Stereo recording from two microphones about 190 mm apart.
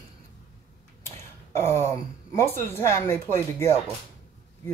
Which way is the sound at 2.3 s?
15° left (ahead or behind).